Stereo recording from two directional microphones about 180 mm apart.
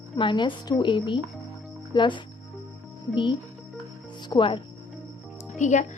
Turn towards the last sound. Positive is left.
turn(degrees=40)  # may be behind; listen again after turning